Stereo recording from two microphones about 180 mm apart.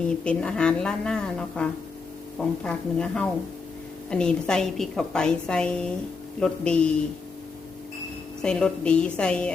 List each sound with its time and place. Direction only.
0.1 s a woman's voice: 5° left (ahead or behind)
8.4 s a woman's voice: 5° left (ahead or behind)